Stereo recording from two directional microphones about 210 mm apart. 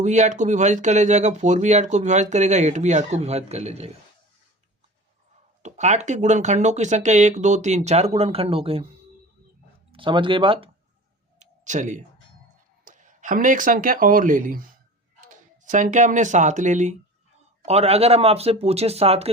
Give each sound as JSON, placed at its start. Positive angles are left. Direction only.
{"t": 0.0, "sound": "speech", "side_deg": -35}
{"t": 5.6, "sound": "speech", "side_deg": -35}
{"t": 9.9, "sound": "speech", "side_deg": -25}
{"t": 11.3, "sound": "clicking", "side_deg": -35}
{"t": 12.8, "sound": "speech", "side_deg": -35}